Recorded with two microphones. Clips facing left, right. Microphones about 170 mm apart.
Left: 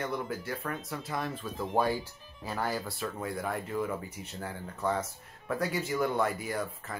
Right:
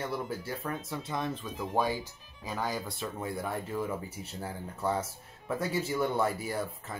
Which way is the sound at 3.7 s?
5° right (ahead or behind).